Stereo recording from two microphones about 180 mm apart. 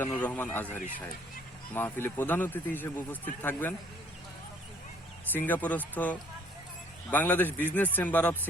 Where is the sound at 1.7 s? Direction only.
10° left (ahead or behind).